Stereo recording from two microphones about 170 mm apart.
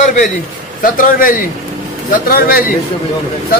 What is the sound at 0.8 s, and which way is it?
Speech, 50° left (ahead or behind).